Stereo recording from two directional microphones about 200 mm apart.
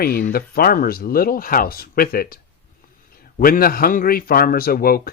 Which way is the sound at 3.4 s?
45° left (ahead or behind).